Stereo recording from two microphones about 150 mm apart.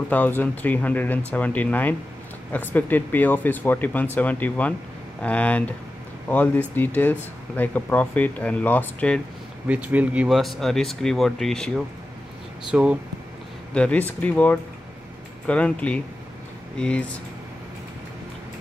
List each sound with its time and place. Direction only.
0.1 s speech: 10° left (ahead or behind)
9.7 s speech: 10° right (ahead or behind)
12.7 s speech: 10° right (ahead or behind)
13.7 s speech: 10° left (ahead or behind)